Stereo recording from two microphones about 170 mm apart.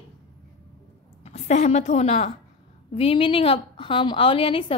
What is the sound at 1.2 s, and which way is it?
A woman's voice, 40° left (ahead or behind).